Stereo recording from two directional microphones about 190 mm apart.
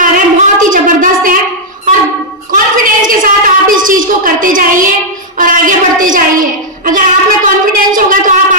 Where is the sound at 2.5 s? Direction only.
45° right (ahead or behind).